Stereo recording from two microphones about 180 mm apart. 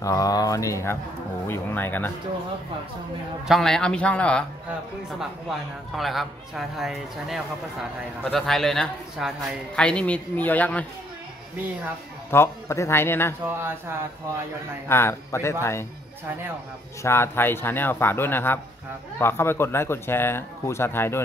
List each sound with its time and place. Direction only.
0.0 s speech: 20° left (ahead or behind)
3.4 s a man's voice: centre (ahead or behind)
5.9 s a man's voice: centre (ahead or behind)
12.3 s speech: 15° left (ahead or behind)
13.6 s speech: 10° right (ahead or behind)
14.9 s speech: 15° left (ahead or behind)
17.0 s speech: 15° left (ahead or behind)